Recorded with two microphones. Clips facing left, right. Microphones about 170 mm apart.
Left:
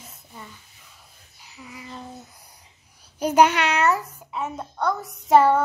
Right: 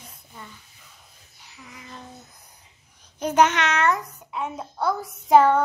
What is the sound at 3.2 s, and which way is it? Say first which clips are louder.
A child's voice: left 2 dB; 10° left (ahead or behind).